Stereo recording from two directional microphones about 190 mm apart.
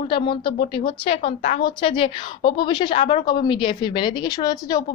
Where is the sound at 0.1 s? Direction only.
25° left (ahead or behind).